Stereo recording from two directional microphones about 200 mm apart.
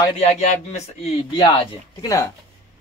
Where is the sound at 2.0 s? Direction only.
15° left (ahead or behind).